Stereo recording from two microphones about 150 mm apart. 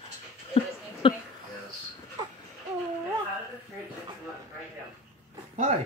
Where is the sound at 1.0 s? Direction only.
35° left (ahead or behind).